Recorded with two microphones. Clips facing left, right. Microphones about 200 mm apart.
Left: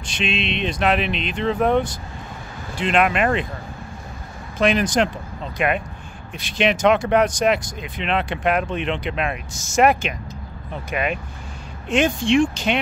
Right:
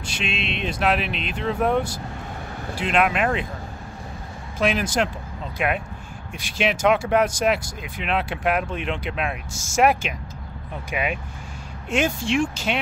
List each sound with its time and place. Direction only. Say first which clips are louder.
0.0 s speech: left 4 dB; 5° right (ahead or behind)
4.6 s speech: left 4 dB; 5° right (ahead or behind)
6.3 s speech: left 3 dB; 10° right (ahead or behind)